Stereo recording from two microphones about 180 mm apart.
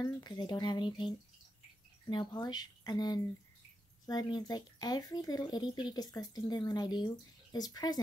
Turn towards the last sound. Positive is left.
turn(degrees=20)  # may be behind; listen again after turning